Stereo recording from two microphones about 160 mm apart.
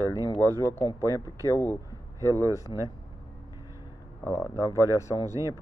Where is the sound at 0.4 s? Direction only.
15° left (ahead or behind).